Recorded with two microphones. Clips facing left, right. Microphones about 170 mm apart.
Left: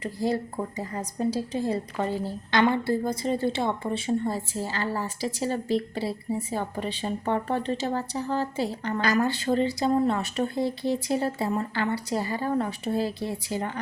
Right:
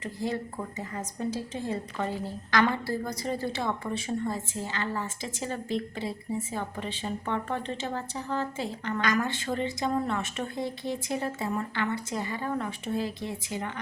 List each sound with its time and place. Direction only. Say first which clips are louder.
0.0 s a woman's voice: left 5 dB; 35° left (ahead or behind)